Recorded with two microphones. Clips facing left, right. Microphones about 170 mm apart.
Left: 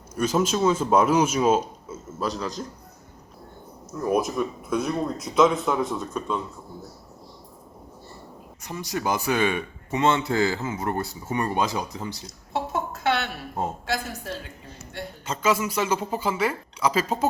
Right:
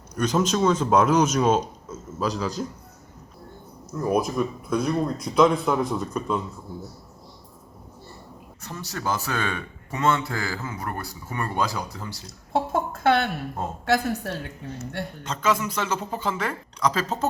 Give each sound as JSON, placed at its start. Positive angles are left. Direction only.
{"t": 0.1, "sound": "speech", "side_deg": 5}
{"t": 3.9, "sound": "speech", "side_deg": 0}
{"t": 8.6, "sound": "speech", "side_deg": 15}
{"t": 12.5, "sound": "a sound", "side_deg": -55}
{"t": 15.2, "sound": "speech", "side_deg": 10}